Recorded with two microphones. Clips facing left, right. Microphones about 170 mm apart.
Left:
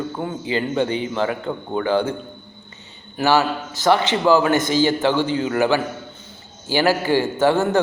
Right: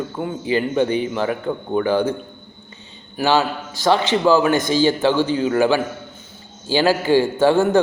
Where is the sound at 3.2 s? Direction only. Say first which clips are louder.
Even; 15° right (ahead or behind).